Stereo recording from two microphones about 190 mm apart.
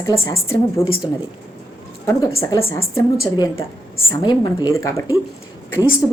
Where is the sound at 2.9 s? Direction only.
15° left (ahead or behind).